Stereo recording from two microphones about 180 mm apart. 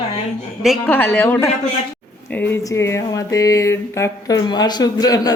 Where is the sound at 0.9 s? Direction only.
10° left (ahead or behind).